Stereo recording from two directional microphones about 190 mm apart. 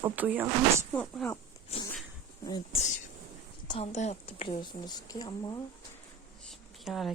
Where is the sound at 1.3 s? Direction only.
20° left (ahead or behind).